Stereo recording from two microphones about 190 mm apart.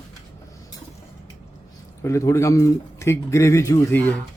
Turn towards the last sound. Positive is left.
turn(degrees=15)  # may be behind; listen again after turning